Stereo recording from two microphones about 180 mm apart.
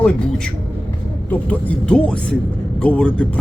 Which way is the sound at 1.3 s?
10° left (ahead or behind).